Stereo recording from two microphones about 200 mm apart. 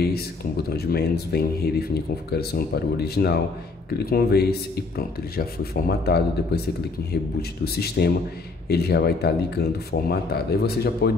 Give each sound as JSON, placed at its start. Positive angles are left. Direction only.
{"t": 0.0, "sound": "speech", "side_deg": 50}
{"t": 7.6, "sound": "speech", "side_deg": 50}